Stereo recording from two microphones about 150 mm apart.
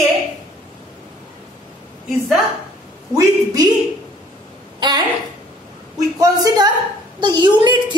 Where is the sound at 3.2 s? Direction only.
25° right (ahead or behind).